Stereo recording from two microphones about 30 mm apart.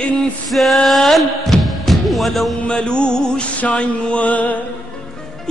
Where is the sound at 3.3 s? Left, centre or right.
Left.